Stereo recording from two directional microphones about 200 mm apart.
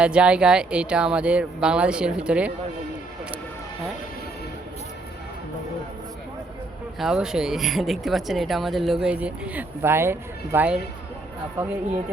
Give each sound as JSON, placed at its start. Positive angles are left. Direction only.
{"t": 0.0, "sound": "speech", "side_deg": -5}
{"t": 7.0, "sound": "speech", "side_deg": -5}